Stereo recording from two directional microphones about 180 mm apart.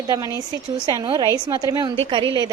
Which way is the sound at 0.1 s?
20° right (ahead or behind).